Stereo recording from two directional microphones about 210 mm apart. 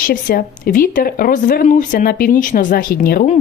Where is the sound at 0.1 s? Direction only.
45° left (ahead or behind).